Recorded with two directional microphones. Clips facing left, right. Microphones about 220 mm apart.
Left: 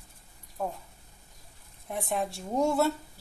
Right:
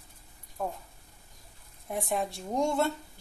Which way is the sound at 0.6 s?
5° left (ahead or behind).